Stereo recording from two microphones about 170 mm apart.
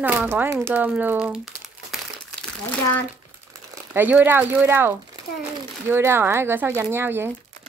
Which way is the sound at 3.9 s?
10° right (ahead or behind).